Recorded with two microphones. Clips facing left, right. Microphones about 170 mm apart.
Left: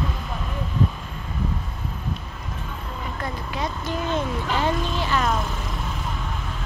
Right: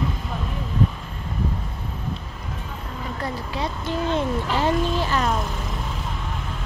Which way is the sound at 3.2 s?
30° right (ahead or behind).